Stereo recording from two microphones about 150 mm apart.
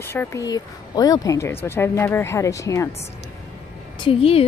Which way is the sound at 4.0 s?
40° left (ahead or behind).